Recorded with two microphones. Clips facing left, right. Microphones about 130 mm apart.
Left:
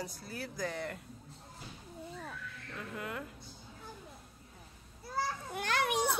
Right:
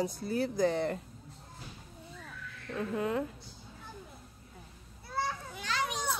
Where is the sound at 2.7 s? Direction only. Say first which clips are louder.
Right 10 dB; 30° right (ahead or behind).